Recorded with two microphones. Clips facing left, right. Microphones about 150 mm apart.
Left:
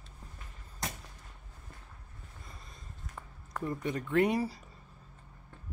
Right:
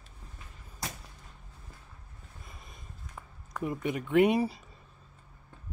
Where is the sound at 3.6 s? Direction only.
10° right (ahead or behind).